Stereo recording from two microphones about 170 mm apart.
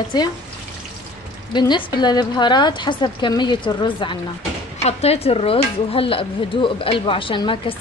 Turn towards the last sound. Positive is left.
turn(degrees=30)  # may be behind; listen again after turning